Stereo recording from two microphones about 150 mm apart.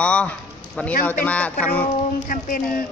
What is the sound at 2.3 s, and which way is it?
Speech, 65° left (ahead or behind).